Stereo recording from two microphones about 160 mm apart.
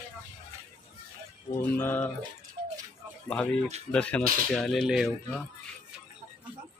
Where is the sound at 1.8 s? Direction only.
10° left (ahead or behind).